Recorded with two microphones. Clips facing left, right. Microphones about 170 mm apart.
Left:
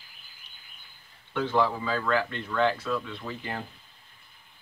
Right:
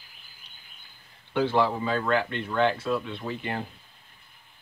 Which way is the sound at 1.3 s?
30° right (ahead or behind).